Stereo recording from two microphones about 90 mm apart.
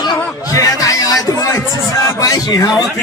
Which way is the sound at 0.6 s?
40° left (ahead or behind).